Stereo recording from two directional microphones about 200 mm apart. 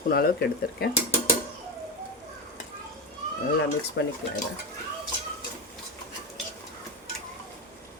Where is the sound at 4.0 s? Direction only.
60° left (ahead or behind).